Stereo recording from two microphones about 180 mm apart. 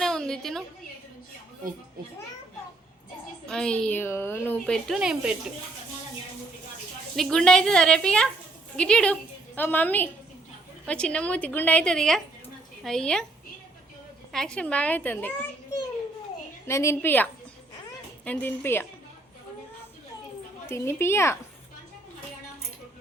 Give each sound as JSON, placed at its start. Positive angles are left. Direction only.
{"t": 0.0, "sound": "a sound", "side_deg": 5}
{"t": 3.4, "sound": "a woman's voice", "side_deg": 5}
{"t": 7.2, "sound": "a woman's voice", "side_deg": 5}
{"t": 14.3, "sound": "a woman's voice", "side_deg": 5}
{"t": 16.6, "sound": "a woman's voice", "side_deg": 15}
{"t": 18.3, "sound": "a woman's voice", "side_deg": 10}
{"t": 20.7, "sound": "a woman's voice", "side_deg": 15}